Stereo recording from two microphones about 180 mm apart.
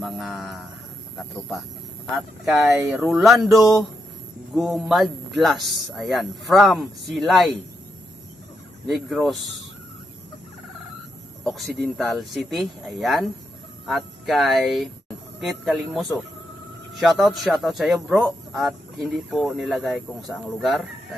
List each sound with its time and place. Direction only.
0.0 s a man's voice: centre (ahead or behind)
2.8 s speech: 15° right (ahead or behind)
4.6 s a man's voice: centre (ahead or behind)
8.8 s a man's voice: centre (ahead or behind)
11.4 s a man's voice: centre (ahead or behind)